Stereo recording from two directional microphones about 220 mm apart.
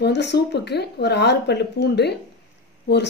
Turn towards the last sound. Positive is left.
turn(degrees=50)  # may be behind; listen again after turning